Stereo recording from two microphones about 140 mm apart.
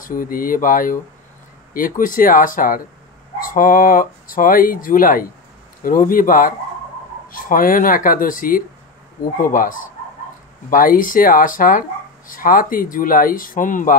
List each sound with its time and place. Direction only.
0.0 s speech: 90° left
12.3 s speech: 90° left; by 13.9 s 70° left (ahead or behind)